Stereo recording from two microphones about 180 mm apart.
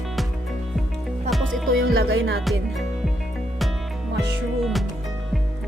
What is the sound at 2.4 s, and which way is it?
Speech, centre (ahead or behind).